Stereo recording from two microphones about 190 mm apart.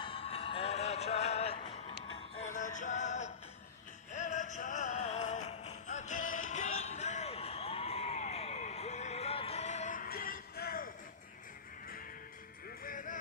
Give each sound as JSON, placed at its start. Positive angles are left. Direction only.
{"t": 0.0, "sound": "music", "side_deg": 30}
{"t": 12.6, "sound": "music", "side_deg": 45}